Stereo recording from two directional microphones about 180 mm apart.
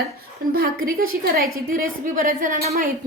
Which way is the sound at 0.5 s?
55° right (ahead or behind).